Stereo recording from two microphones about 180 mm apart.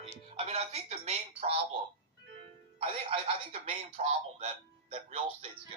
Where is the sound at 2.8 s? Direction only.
30° right (ahead or behind).